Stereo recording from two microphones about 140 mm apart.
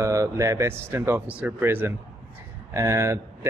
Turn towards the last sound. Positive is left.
turn(degrees=-20)  # may be behind; listen again after turning